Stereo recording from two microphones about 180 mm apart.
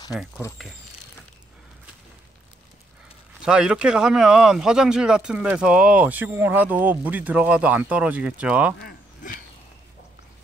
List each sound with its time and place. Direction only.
0.1 s speech: centre (ahead or behind)
3.4 s speech: 5° right (ahead or behind)
8.7 s a sound: 55° left (ahead or behind)